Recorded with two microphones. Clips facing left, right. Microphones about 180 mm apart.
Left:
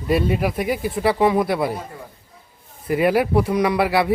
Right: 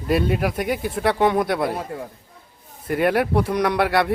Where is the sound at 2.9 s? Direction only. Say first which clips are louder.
Left 2 dB; centre (ahead or behind).